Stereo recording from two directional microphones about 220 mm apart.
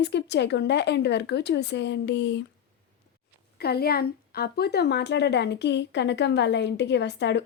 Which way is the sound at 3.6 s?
45° left (ahead or behind).